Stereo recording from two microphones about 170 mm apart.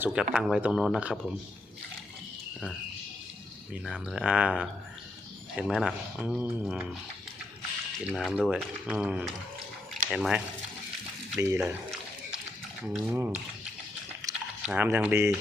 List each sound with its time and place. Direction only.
0.0 s speech: 5° right (ahead or behind)
3.7 s speech: 5° right (ahead or behind)
8.1 s speech: centre (ahead or behind)
11.3 s speech: 15° right (ahead or behind)
11.6 s a sound: 5° right (ahead or behind)
13.1 s speech: 10° right (ahead or behind)
14.1 s a sound: 20° right (ahead or behind)
14.6 s speech: 10° right (ahead or behind)